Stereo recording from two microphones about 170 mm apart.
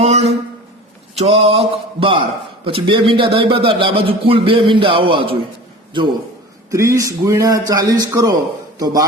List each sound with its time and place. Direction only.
0.0 s a sound: 40° right (ahead or behind)
1.1 s a man's voice: 40° right (ahead or behind)
6.7 s a man's voice: 15° right (ahead or behind)